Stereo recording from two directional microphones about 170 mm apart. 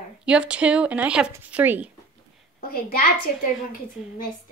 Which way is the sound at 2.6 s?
60° left (ahead or behind).